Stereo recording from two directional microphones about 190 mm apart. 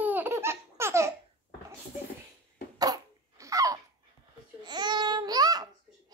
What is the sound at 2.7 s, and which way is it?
Cough, 20° right (ahead or behind).